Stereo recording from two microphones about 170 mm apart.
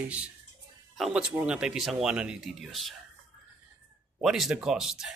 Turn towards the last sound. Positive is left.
turn(degrees=-5)  # may be behind; listen again after turning